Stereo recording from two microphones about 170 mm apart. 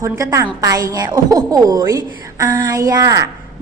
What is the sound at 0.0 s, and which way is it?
A woman's voice, 20° right (ahead or behind).